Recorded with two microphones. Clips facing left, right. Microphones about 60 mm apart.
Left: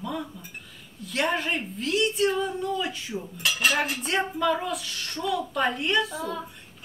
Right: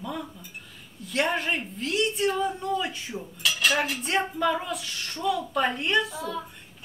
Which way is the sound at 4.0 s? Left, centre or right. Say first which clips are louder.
Even; centre.